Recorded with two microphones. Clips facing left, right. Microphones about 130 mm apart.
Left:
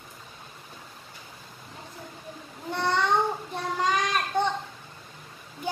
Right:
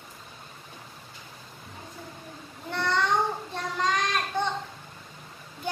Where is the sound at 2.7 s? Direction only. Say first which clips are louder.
Left 1 dB; 15° left (ahead or behind).